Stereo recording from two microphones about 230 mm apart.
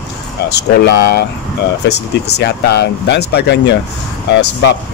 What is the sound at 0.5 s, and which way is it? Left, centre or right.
Speech, left.